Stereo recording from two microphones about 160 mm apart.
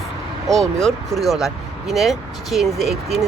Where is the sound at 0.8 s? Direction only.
Centre (ahead or behind).